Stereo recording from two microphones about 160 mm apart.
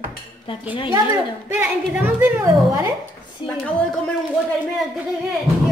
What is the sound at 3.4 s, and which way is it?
Dishes, 30° left (ahead or behind).